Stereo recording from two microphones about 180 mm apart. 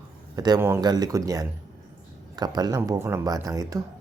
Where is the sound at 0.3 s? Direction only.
20° right (ahead or behind).